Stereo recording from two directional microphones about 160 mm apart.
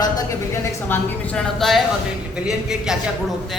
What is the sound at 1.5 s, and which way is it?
A man's voice, centre (ahead or behind).